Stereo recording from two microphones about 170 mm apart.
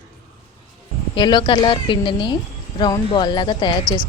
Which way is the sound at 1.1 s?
25° left (ahead or behind).